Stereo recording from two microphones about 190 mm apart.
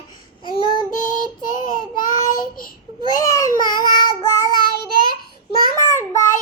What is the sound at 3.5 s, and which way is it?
Child singing, 45° left (ahead or behind).